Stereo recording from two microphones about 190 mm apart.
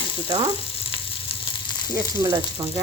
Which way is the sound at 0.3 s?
20° right (ahead or behind).